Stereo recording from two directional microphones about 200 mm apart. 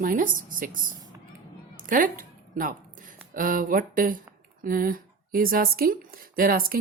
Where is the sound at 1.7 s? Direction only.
40° right (ahead or behind).